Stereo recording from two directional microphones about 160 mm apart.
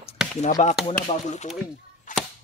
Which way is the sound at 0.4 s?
50° left (ahead or behind).